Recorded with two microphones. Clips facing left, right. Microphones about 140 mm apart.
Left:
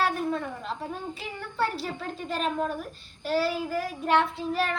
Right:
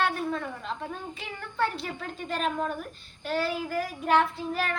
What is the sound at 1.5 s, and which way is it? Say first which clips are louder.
Child singing: even; 5° left (ahead or behind).